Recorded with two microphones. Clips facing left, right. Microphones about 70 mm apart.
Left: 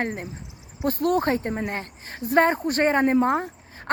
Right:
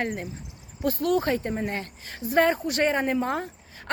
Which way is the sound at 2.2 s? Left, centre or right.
Left.